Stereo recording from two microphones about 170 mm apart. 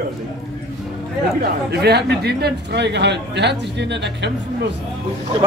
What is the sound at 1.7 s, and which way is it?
A man's voice, 70° right (ahead or behind).